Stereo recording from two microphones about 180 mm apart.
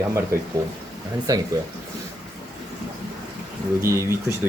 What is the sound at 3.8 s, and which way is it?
Speech, 15° right (ahead or behind).